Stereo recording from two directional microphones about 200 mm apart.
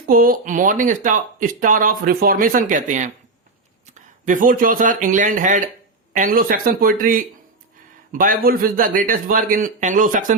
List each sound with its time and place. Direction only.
0.1 s speech: 45° right (ahead or behind)
4.3 s speech: 40° right (ahead or behind)